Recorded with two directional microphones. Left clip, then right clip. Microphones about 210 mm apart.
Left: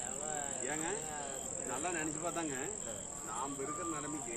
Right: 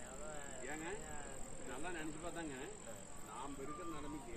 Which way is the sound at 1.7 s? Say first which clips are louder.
Left 8 dB; 35° right (ahead or behind).